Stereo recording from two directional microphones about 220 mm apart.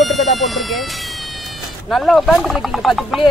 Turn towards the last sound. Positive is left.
turn(degrees=0)  # may be behind; listen again after turning